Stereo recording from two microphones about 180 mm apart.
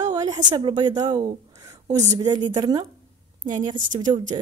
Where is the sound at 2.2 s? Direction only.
25° right (ahead or behind).